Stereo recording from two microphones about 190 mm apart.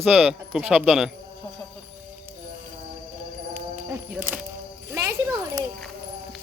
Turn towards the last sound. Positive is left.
turn(degrees=-15)  # may be behind; listen again after turning